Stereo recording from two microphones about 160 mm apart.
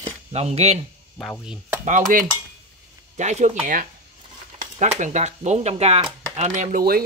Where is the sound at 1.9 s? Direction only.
55° right (ahead or behind).